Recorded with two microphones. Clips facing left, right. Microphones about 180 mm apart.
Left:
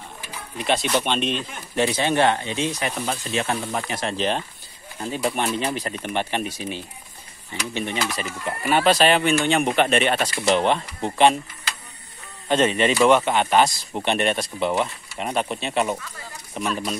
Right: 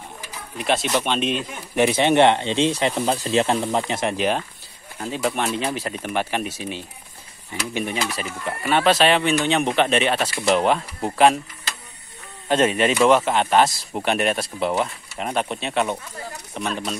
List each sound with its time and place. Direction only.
0.6 s speech: centre (ahead or behind)
1.8 s speech: 25° right (ahead or behind)
5.1 s speech: centre (ahead or behind)
12.4 s speech: 5° right (ahead or behind)